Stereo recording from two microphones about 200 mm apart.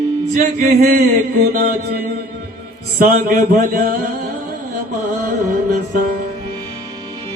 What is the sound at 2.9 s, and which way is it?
Speech, 45° right (ahead or behind).